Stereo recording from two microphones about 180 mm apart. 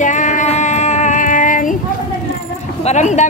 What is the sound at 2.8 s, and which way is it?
Speech, 40° left (ahead or behind).